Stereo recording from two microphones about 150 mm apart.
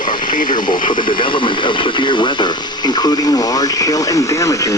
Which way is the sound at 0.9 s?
30° left (ahead or behind).